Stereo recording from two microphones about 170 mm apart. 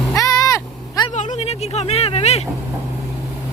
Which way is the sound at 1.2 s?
40° left (ahead or behind).